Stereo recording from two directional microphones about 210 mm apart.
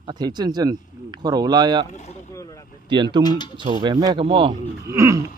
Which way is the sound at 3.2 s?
20° left (ahead or behind).